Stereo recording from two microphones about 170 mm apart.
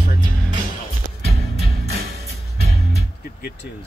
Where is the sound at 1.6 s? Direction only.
70° right (ahead or behind).